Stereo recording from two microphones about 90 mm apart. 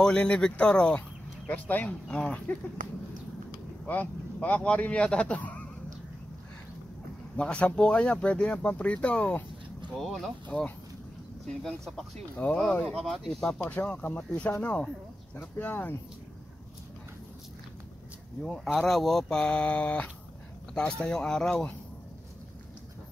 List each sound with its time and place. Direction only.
0.0 s speech: 10° left (ahead or behind)
3.8 s speech: 20° left (ahead or behind)
7.3 s speech: 10° left (ahead or behind)
12.4 s speech: 15° left (ahead or behind)
12.8 s speech: 5° left (ahead or behind)
13.6 s speech: 20° left (ahead or behind)
18.4 s speech: 5° left (ahead or behind)